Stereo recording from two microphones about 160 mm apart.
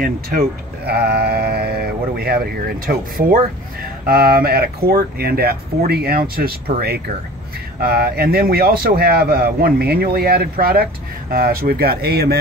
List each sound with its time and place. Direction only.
0.0 s speech: 70° right (ahead or behind)